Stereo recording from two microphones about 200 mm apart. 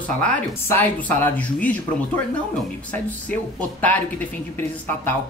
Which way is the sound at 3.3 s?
5° left (ahead or behind).